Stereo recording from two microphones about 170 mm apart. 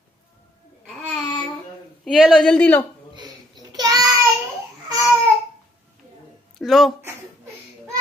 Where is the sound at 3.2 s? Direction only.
25° right (ahead or behind).